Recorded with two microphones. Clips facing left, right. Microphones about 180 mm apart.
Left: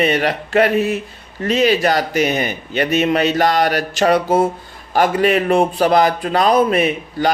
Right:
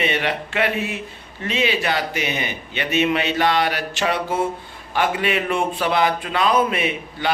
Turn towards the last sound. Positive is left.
turn(degrees=40)  # may be behind; listen again after turning